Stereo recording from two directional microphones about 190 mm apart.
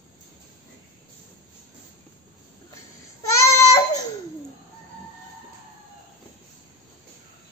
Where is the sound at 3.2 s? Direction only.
15° left (ahead or behind).